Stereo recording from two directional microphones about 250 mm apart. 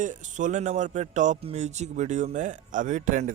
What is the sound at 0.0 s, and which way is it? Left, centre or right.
Speech, right.